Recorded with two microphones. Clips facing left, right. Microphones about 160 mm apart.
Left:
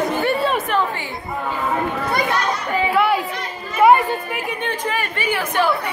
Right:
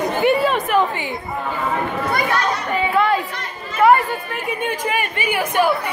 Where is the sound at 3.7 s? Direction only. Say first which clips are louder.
Left 1 dB; 15° left (ahead or behind).